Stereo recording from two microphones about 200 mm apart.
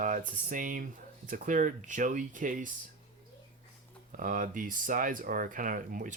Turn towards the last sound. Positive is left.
turn(degrees=-45)  # may be behind; listen again after turning